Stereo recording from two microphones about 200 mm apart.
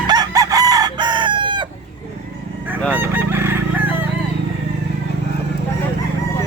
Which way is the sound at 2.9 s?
10° right (ahead or behind).